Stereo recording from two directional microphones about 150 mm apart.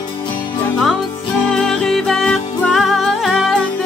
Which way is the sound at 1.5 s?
5° left (ahead or behind).